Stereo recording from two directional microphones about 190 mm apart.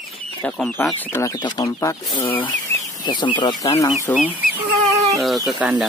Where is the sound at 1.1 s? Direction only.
15° left (ahead or behind).